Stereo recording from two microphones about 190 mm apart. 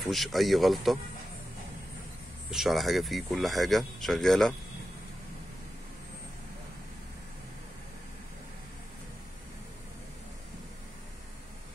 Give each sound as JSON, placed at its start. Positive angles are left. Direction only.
{"t": 0.1, "sound": "speech", "side_deg": 0}
{"t": 2.5, "sound": "speech", "side_deg": 0}